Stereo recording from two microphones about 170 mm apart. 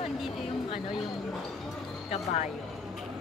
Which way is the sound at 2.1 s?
40° left (ahead or behind).